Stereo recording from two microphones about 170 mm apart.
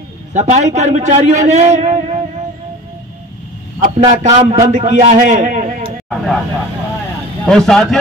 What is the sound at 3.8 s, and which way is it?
A man's voice, 40° right (ahead or behind).